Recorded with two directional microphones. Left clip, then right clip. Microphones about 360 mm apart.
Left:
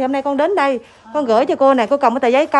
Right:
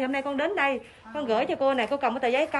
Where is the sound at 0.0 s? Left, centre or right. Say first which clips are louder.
Left 11 dB; centre.